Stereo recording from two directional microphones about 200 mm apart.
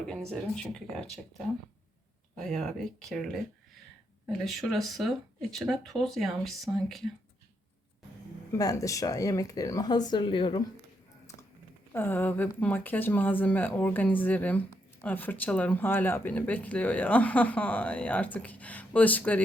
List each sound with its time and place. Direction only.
0.3 s speech: 5° left (ahead or behind)
2.3 s speech: centre (ahead or behind)
4.4 s speech: centre (ahead or behind)
8.5 s a woman's voice: 15° left (ahead or behind)
11.9 s speech: 10° left (ahead or behind)